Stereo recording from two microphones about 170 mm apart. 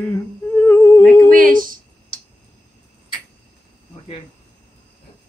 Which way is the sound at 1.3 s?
55° right (ahead or behind).